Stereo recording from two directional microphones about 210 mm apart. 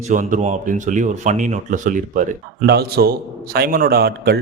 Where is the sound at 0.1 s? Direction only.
35° right (ahead or behind).